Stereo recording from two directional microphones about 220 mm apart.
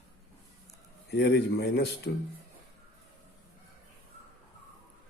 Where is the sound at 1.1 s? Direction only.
50° left (ahead or behind).